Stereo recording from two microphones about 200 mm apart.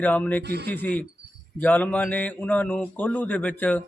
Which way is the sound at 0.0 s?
10° left (ahead or behind).